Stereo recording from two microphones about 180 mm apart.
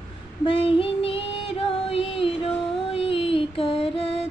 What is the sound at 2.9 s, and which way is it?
Music, 35° left (ahead or behind).